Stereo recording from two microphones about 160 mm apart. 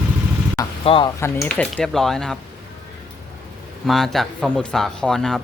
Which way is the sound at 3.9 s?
Centre (ahead or behind).